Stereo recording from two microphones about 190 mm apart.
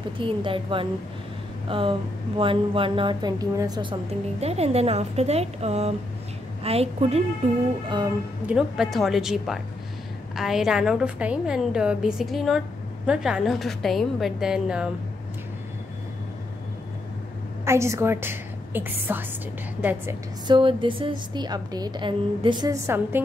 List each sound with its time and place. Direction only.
0.2 s a woman's voice: 25° right (ahead or behind)
8.5 s a woman's voice: 5° right (ahead or behind)
17.6 s a woman's voice: 15° right (ahead or behind)
20.4 s speech: 25° right (ahead or behind)